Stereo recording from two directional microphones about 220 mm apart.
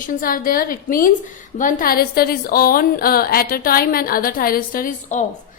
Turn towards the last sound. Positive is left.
turn(degrees=35)  # may be behind; listen again after turning